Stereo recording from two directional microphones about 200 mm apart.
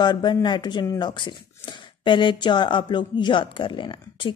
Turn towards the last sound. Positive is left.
turn(degrees=25)  # may be behind; listen again after turning